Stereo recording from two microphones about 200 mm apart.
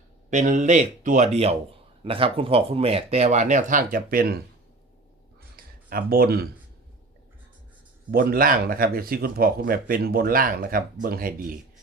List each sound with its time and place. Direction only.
0.3 s speech: 40° right (ahead or behind)
5.5 s a sound: 45° right (ahead or behind)
8.1 s speech: 45° right (ahead or behind)